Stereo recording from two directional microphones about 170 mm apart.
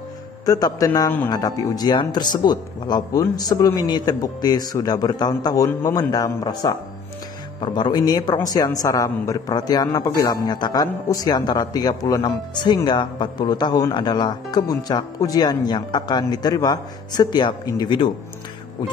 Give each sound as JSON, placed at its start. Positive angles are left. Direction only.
{"t": 0.5, "sound": "speech", "side_deg": 20}